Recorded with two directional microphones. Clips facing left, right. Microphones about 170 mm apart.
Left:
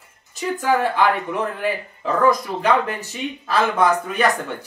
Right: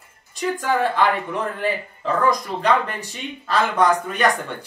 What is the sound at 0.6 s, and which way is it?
Speech, 10° left (ahead or behind).